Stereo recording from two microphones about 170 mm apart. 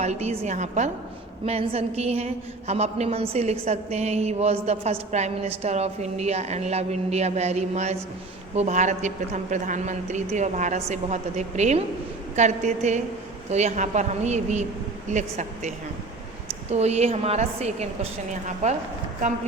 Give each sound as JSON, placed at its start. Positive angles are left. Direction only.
{"t": 0.0, "sound": "a woman's voice", "side_deg": -40}